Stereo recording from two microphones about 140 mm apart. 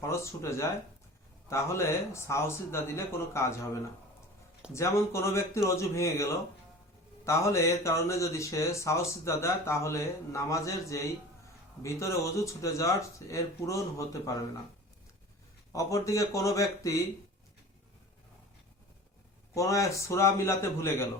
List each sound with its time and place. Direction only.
0.0 s speech: 20° left (ahead or behind)
15.7 s speech: 25° left (ahead or behind)
19.5 s speech: 20° left (ahead or behind)